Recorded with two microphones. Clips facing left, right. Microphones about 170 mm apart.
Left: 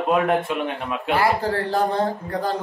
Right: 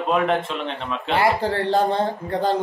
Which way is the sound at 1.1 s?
25° right (ahead or behind).